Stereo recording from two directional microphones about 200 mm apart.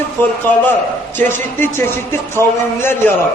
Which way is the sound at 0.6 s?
10° left (ahead or behind).